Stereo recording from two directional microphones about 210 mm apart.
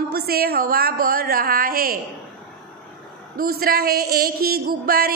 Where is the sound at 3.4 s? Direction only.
45° right (ahead or behind).